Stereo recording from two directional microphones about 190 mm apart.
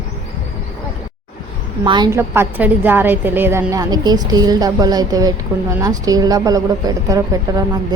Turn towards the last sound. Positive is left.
turn(degrees=-20)  # may be behind; listen again after turning